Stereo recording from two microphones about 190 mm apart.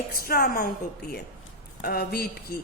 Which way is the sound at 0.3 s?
50° left (ahead or behind).